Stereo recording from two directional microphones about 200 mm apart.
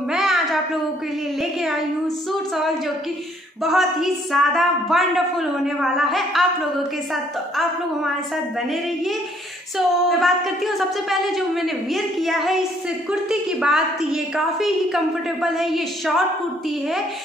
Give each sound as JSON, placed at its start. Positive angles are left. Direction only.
{"t": 0.1, "sound": "a sound", "side_deg": 0}
{"t": 3.6, "sound": "a woman's voice", "side_deg": 0}
{"t": 9.8, "sound": "a woman's voice", "side_deg": 0}